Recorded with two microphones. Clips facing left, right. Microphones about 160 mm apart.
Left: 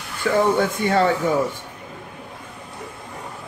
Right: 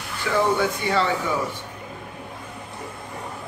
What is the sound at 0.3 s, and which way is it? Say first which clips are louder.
Speech: left 3 dB; 45° left (ahead or behind).